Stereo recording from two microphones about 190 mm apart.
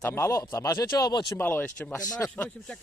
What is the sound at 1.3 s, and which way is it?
Speech, 10° left (ahead or behind).